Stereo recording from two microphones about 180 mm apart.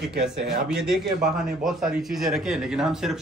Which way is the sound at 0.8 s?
Centre (ahead or behind).